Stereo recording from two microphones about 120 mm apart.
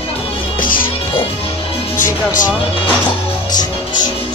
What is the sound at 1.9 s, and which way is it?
Music, 90° left.